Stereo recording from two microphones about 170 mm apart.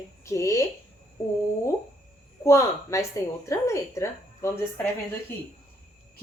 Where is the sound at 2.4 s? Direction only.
15° left (ahead or behind).